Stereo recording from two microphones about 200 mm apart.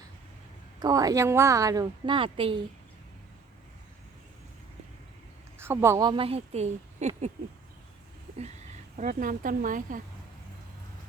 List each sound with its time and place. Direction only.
0.8 s a woman's voice: 20° right (ahead or behind)
5.5 s a woman's voice: 10° right (ahead or behind); by 7.1 s 35° right (ahead or behind)
9.0 s speech: 40° right (ahead or behind)